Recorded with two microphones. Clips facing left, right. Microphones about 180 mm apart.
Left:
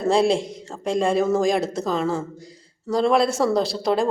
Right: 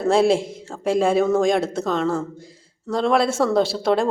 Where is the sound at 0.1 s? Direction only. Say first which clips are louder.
Right 2 dB; centre (ahead or behind).